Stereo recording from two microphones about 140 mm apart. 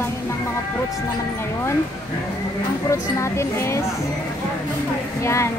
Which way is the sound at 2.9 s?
20° left (ahead or behind).